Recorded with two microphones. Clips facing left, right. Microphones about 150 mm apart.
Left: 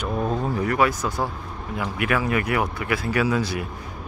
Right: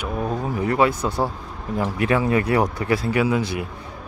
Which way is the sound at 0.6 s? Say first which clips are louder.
Right 4 dB; 25° right (ahead or behind).